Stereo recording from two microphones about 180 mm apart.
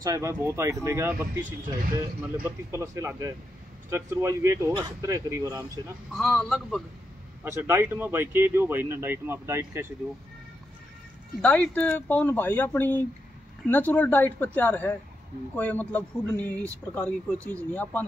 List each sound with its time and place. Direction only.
0.0 s speech: 15° right (ahead or behind)
2.7 s speech: 15° right (ahead or behind)
6.1 s speech: centre (ahead or behind)
7.4 s speech: 15° right (ahead or behind)
11.4 s speech: 5° left (ahead or behind)